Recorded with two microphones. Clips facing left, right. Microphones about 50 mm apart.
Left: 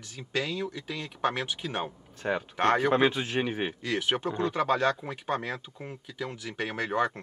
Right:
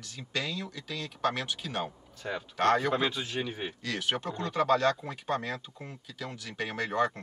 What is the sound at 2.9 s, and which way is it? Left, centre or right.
A man's voice, left.